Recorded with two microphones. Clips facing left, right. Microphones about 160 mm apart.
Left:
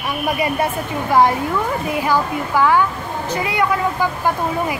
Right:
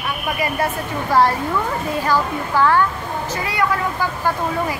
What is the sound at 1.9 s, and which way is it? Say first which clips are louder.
Speech: even; 15° left (ahead or behind).